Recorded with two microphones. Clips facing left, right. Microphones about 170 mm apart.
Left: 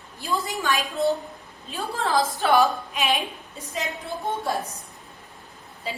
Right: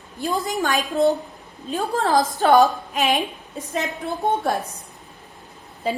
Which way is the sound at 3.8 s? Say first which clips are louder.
Right 5 dB; 60° right (ahead or behind).